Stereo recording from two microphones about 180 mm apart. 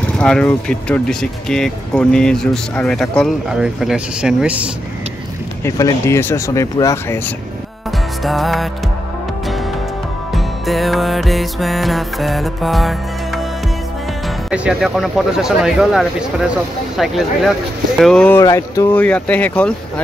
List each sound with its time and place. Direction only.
0.0 s speech: 5° left (ahead or behind)
5.7 s speech: 15° left (ahead or behind)
8.2 s speech: centre (ahead or behind)
10.3 s speech: centre (ahead or behind)
14.5 s speech: 5° right (ahead or behind)